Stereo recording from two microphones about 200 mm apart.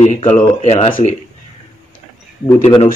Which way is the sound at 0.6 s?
30° left (ahead or behind).